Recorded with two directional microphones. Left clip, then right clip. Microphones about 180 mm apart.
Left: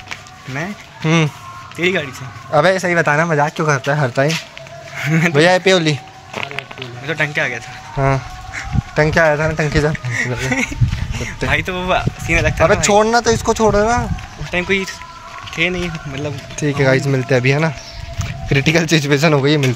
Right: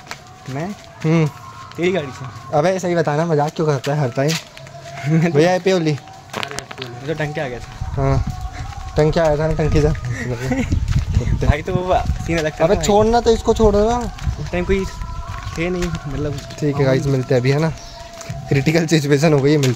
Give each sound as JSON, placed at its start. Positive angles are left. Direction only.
{"t": 0.6, "sound": "speech", "side_deg": -5}
{"t": 5.3, "sound": "a man's voice", "side_deg": 0}
{"t": 6.3, "sound": "a sound", "side_deg": -10}
{"t": 7.1, "sound": "speech", "side_deg": -20}
{"t": 8.0, "sound": "speech", "side_deg": 0}
{"t": 10.4, "sound": "speech", "side_deg": -25}
{"t": 12.8, "sound": "speech", "side_deg": -15}
{"t": 14.5, "sound": "speech", "side_deg": -35}
{"t": 16.5, "sound": "speech", "side_deg": 0}